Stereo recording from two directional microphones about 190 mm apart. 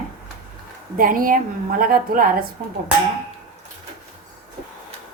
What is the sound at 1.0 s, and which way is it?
A woman's voice, 45° right (ahead or behind).